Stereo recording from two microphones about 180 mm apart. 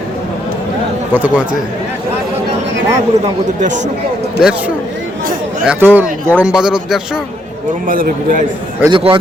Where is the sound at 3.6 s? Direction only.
45° right (ahead or behind).